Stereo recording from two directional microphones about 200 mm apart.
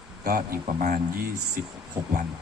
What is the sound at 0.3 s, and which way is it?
Speech, 45° right (ahead or behind).